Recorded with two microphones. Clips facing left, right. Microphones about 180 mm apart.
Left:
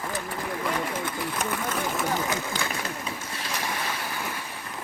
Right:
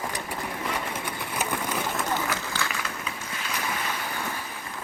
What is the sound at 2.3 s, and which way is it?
Run, 20° left (ahead or behind).